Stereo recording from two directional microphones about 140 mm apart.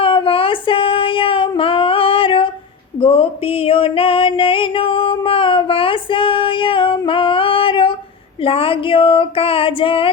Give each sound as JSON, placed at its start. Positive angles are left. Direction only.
{"t": 0.0, "sound": "female singing", "side_deg": 40}
{"t": 3.0, "sound": "music", "side_deg": 45}
{"t": 8.4, "sound": "a sound", "side_deg": 40}